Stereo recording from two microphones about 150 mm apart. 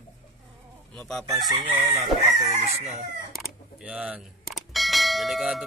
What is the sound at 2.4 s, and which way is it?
Chicken, 50° right (ahead or behind).